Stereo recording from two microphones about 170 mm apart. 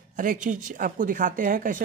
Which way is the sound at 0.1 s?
50° right (ahead or behind).